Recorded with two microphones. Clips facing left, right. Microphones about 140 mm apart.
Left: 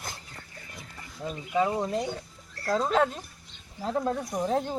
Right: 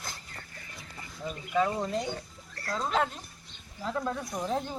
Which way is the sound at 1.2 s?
15° left (ahead or behind).